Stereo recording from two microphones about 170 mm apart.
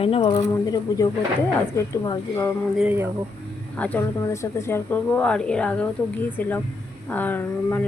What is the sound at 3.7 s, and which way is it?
A woman's voice, 10° left (ahead or behind).